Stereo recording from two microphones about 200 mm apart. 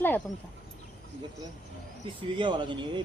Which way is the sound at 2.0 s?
25° right (ahead or behind).